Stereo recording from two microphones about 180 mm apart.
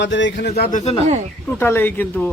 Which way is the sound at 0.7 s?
35° left (ahead or behind).